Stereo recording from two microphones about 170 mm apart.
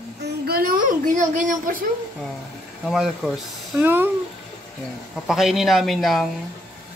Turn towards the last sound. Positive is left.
turn(degrees=0)  # may be behind; listen again after turning